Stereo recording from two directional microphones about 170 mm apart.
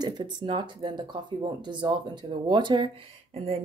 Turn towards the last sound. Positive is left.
turn(degrees=-35)  # may be behind; listen again after turning